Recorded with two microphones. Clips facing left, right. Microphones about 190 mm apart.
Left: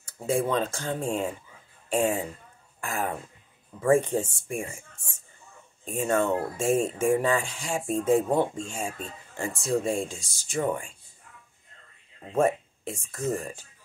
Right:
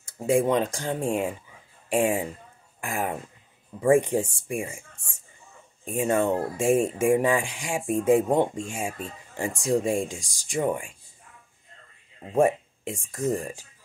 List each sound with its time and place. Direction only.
0.2 s speech: 15° right (ahead or behind)
5.9 s speech: 10° right (ahead or behind)
12.3 s speech: 15° right (ahead or behind)